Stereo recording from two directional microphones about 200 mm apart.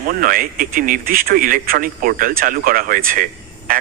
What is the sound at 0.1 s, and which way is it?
A man's voice, 45° right (ahead or behind).